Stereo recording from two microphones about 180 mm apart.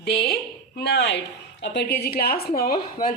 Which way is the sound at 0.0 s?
65° left (ahead or behind).